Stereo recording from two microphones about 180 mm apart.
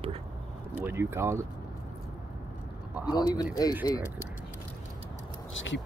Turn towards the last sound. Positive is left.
turn(degrees=90)